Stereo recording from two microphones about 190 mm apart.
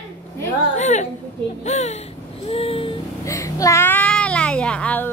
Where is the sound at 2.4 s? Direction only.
30° left (ahead or behind).